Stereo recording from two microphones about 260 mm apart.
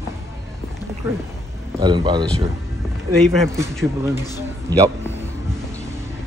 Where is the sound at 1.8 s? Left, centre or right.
Centre.